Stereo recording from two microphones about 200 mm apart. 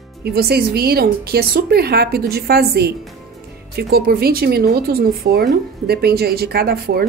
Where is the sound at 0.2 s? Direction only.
50° right (ahead or behind).